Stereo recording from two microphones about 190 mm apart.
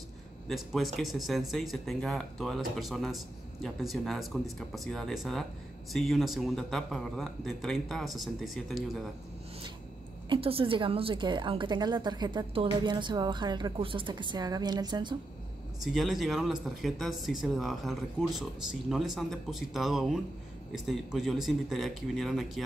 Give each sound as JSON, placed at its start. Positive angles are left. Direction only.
{"t": 0.5, "sound": "a man's voice", "side_deg": 0}
{"t": 10.3, "sound": "a woman's voice", "side_deg": -30}
{"t": 15.8, "sound": "a man's voice", "side_deg": 0}